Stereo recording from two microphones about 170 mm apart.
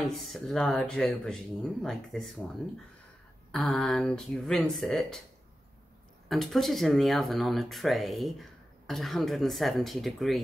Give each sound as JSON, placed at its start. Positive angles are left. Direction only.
{"t": 0.0, "sound": "speech", "side_deg": 0}
{"t": 3.5, "sound": "speech", "side_deg": 0}
{"t": 6.2, "sound": "speech", "side_deg": 0}